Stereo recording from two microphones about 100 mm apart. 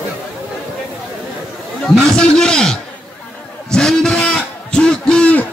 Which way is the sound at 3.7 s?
5° left (ahead or behind).